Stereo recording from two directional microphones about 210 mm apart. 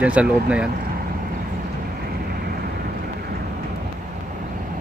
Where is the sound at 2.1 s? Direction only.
45° right (ahead or behind).